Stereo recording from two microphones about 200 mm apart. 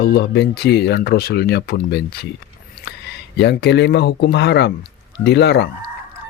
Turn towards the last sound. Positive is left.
turn(degrees=60)  # may be behind; listen again after turning